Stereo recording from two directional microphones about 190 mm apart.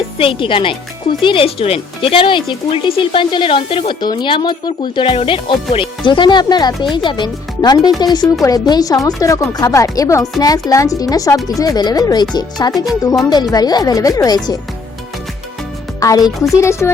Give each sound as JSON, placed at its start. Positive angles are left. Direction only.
{"t": 0.2, "sound": "speech", "side_deg": 30}
{"t": 12.7, "sound": "speech", "side_deg": 0}
{"t": 13.3, "sound": "speech", "side_deg": 20}
{"t": 16.0, "sound": "speech", "side_deg": 20}